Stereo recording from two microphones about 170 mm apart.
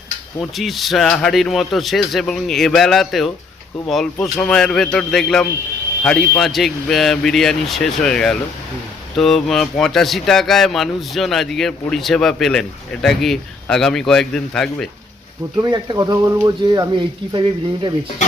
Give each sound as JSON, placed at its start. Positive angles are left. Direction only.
{"t": 0.3, "sound": "speech", "side_deg": 0}
{"t": 15.6, "sound": "speech", "side_deg": -25}